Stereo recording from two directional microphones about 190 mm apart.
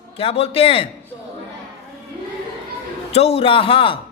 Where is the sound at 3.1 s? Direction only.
30° left (ahead or behind).